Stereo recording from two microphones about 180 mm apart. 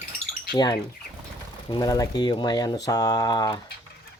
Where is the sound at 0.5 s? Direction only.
20° left (ahead or behind).